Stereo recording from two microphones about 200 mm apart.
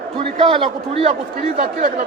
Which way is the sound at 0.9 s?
30° right (ahead or behind).